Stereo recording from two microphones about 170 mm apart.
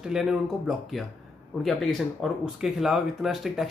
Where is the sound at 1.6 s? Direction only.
Centre (ahead or behind).